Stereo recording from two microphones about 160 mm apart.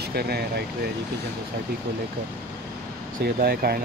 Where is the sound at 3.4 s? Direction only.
75° right (ahead or behind).